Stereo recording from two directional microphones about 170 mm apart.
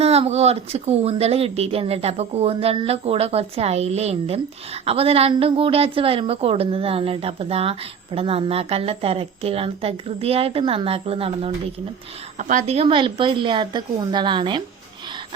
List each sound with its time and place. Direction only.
0.0 s a woman's voice: 35° right (ahead or behind)
12.4 s a woman's voice: 45° right (ahead or behind); by 14.6 s 30° right (ahead or behind)